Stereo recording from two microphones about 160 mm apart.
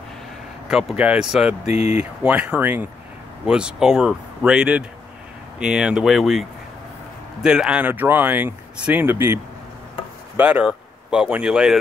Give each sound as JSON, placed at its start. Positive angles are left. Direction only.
{"t": 0.7, "sound": "speech", "side_deg": -5}
{"t": 1.7, "sound": "speech", "side_deg": 40}
{"t": 2.2, "sound": "speech", "side_deg": -10}
{"t": 7.4, "sound": "speech", "side_deg": -5}